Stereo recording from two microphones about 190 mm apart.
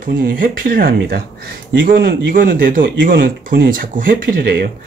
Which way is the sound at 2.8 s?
75° right (ahead or behind).